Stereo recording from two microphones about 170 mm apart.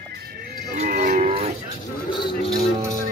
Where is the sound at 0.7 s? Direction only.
55° right (ahead or behind).